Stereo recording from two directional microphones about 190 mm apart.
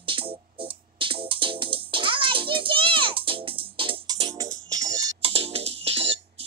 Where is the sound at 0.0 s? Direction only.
25° right (ahead or behind).